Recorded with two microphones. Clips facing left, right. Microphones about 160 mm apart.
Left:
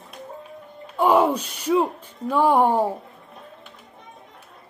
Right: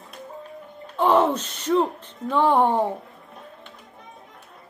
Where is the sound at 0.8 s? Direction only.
10° left (ahead or behind).